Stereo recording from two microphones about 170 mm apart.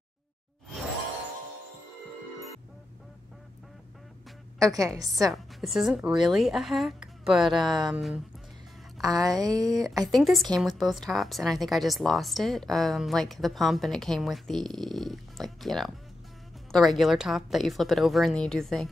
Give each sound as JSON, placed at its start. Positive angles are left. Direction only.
{"t": 4.7, "sound": "speech", "side_deg": -20}
{"t": 5.3, "sound": "a woman's voice", "side_deg": 0}
{"t": 9.0, "sound": "speech", "side_deg": -20}
{"t": 10.0, "sound": "a woman's voice", "side_deg": 0}